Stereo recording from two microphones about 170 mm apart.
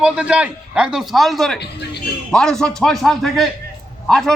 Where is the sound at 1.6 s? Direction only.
75° left (ahead or behind).